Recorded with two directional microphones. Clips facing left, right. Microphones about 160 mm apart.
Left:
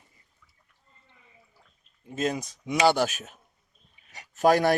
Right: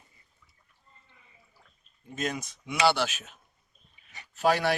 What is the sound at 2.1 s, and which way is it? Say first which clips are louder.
Speech: left 5 dB; 30° left (ahead or behind).